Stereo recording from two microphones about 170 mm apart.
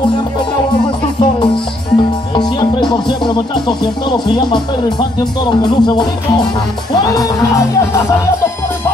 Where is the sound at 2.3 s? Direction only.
25° left (ahead or behind).